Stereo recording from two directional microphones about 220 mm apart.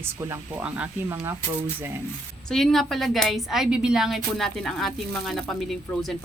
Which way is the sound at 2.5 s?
Centre (ahead or behind).